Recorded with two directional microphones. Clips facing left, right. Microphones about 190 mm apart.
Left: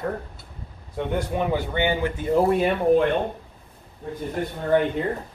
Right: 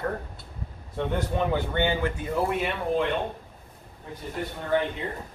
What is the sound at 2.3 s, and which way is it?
Speech, 40° left (ahead or behind).